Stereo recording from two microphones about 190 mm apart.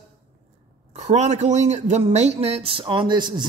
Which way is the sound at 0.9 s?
35° right (ahead or behind).